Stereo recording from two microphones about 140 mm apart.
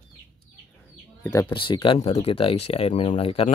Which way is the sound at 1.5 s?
35° left (ahead or behind).